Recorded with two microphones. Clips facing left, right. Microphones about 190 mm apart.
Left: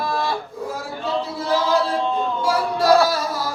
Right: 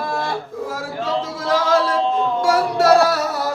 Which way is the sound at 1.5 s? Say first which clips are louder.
Right 2 dB; 90° right.